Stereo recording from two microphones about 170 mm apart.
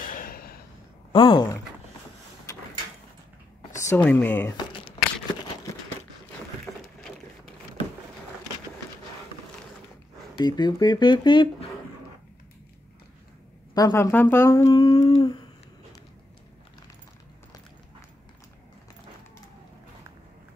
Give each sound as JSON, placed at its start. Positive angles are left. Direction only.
{"t": 0.0, "sound": "gasp", "side_deg": 55}
{"t": 1.1, "sound": "speech", "side_deg": 30}
{"t": 3.9, "sound": "speech", "side_deg": 10}
{"t": 4.6, "sound": "crumpling", "side_deg": 30}
{"t": 6.6, "sound": "a sound", "side_deg": 5}
{"t": 10.3, "sound": "speech", "side_deg": 25}
{"t": 13.7, "sound": "speech", "side_deg": 20}
{"t": 14.9, "sound": "humming", "side_deg": 35}